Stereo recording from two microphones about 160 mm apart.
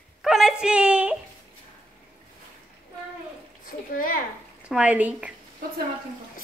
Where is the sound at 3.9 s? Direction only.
60° left (ahead or behind).